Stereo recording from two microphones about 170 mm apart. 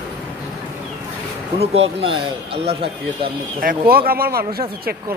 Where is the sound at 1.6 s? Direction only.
35° right (ahead or behind).